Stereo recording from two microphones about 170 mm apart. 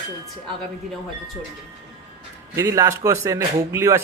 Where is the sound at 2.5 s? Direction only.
20° right (ahead or behind).